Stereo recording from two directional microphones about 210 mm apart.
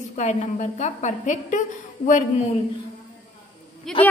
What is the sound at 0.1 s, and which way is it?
A woman's voice, 35° left (ahead or behind).